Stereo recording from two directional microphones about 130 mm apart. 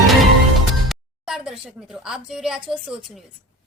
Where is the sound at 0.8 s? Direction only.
5° right (ahead or behind).